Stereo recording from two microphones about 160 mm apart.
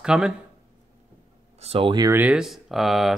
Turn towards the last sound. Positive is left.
turn(degrees=0)  # may be behind; listen again after turning